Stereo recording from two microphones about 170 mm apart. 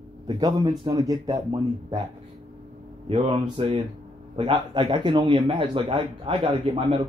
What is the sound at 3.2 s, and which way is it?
A man's voice, 30° right (ahead or behind).